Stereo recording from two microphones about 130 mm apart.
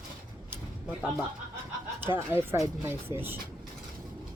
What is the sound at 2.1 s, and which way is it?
Speech, 15° right (ahead or behind).